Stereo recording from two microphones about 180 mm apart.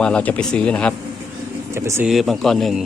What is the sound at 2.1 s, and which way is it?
Speech, centre (ahead or behind).